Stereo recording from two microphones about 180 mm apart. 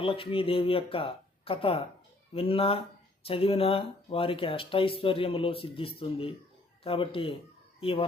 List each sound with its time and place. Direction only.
0.0 s speech: 30° left (ahead or behind)